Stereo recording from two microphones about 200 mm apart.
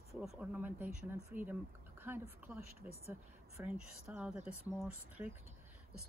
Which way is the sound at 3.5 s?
10° right (ahead or behind).